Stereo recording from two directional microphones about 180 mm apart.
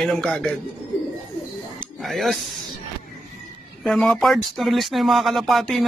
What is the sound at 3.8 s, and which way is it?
Speech, centre (ahead or behind).